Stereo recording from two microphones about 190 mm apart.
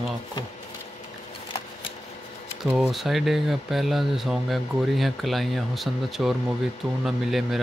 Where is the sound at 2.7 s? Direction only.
Centre (ahead or behind).